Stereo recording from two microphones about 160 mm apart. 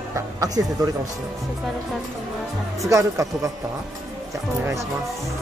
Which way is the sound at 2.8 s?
20° right (ahead or behind).